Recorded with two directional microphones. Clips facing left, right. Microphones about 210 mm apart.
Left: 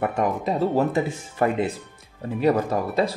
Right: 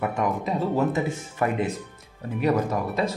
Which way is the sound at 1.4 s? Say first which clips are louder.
Left 3 dB; 30° left (ahead or behind).